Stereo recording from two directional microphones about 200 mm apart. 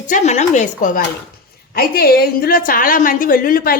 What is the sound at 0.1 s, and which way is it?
A woman's voice, 35° left (ahead or behind).